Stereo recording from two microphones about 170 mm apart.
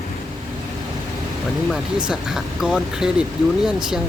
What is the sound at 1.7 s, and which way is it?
Speech, 5° right (ahead or behind).